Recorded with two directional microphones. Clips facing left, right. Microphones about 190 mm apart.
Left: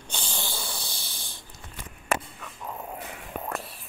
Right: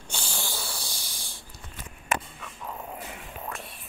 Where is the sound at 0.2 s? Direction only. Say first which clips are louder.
Even; 15° left (ahead or behind).